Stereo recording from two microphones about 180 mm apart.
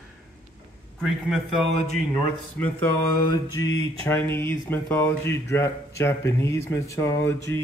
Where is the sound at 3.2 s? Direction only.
20° left (ahead or behind).